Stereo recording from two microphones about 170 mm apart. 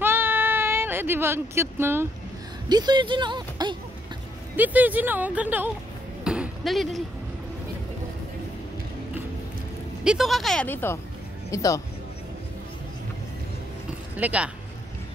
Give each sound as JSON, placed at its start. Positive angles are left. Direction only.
{"t": 0.0, "sound": "a sound", "side_deg": -15}
{"t": 2.7, "sound": "speech", "side_deg": -25}
{"t": 4.6, "sound": "speech", "side_deg": -10}
{"t": 6.2, "sound": "basketball bounce", "side_deg": -5}
{"t": 10.0, "sound": "speech", "side_deg": 0}
{"t": 14.1, "sound": "speech", "side_deg": -10}